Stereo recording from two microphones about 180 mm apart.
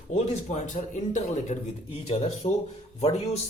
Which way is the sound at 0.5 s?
45° left (ahead or behind).